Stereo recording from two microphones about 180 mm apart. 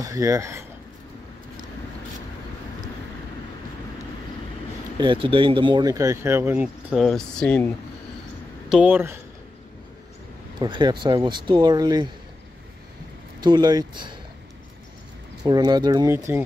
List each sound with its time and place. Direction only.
0.0 s speech: 20° right (ahead or behind)
4.9 s speech: 25° right (ahead or behind); by 7.7 s 5° left (ahead or behind)
8.6 s speech: 5° right (ahead or behind)
10.6 s speech: 25° right (ahead or behind)
13.4 s speech: 25° right (ahead or behind)
15.4 s speech: 25° right (ahead or behind)